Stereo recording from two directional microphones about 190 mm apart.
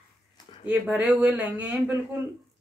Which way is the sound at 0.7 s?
5° right (ahead or behind).